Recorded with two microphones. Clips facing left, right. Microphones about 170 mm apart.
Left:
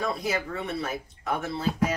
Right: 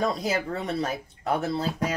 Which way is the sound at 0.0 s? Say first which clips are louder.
Right 3 dB; 40° right (ahead or behind).